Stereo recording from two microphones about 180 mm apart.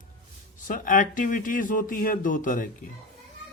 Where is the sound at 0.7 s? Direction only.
45° left (ahead or behind).